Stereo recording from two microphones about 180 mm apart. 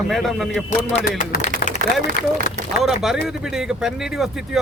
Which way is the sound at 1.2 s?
50° left (ahead or behind).